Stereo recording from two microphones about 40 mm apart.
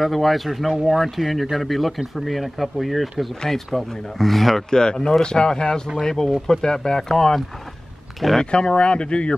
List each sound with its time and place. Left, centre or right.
0.0 s speech: centre
4.6 s speech: centre
8.5 s speech: left